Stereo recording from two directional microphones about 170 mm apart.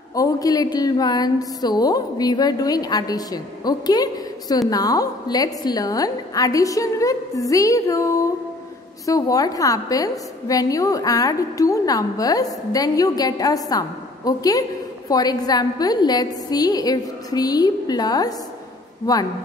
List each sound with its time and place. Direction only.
0.1 s a woman's voice: 20° left (ahead or behind)